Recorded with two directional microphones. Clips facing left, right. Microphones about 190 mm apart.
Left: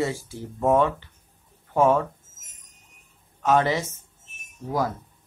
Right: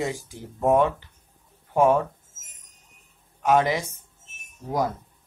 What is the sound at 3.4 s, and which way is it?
Speech, 10° right (ahead or behind).